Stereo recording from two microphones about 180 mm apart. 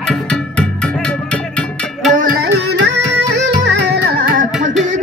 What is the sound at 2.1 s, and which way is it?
Music, 50° right (ahead or behind).